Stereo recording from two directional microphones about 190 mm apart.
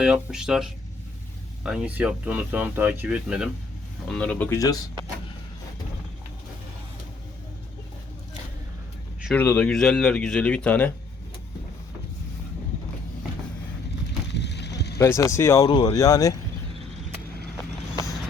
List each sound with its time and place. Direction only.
0.0 s speech: 5° right (ahead or behind); by 4.8 s 15° left (ahead or behind)
9.3 s speech: 10° left (ahead or behind)
14.3 s a sound: 65° left (ahead or behind)
14.9 s speech: 15° left (ahead or behind)